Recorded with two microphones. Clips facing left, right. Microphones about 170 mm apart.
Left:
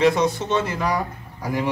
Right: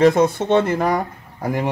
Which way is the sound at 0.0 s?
55° right (ahead or behind).